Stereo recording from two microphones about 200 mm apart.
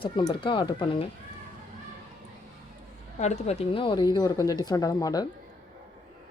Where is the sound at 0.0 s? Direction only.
25° left (ahead or behind).